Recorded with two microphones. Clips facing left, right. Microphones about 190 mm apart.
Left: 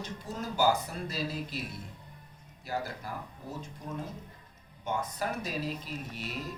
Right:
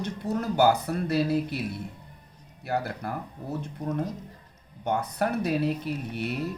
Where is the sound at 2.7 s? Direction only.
65° right (ahead or behind).